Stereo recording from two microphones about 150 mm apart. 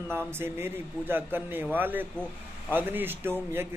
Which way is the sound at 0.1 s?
15° right (ahead or behind).